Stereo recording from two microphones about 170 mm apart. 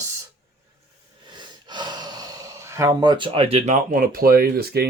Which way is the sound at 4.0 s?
60° right (ahead or behind).